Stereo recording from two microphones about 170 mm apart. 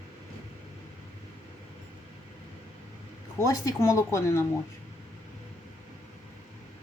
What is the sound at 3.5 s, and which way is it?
Speech, 20° left (ahead or behind).